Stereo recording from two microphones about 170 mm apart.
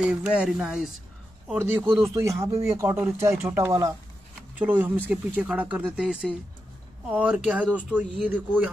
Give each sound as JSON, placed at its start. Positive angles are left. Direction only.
{"t": 0.0, "sound": "speech", "side_deg": -5}
{"t": 2.1, "sound": "speech", "side_deg": -15}
{"t": 4.6, "sound": "speech", "side_deg": -10}